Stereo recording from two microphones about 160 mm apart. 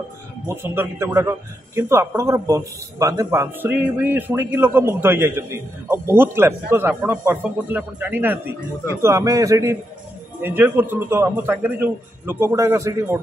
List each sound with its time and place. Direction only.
0.5 s a man's voice: 15° right (ahead or behind)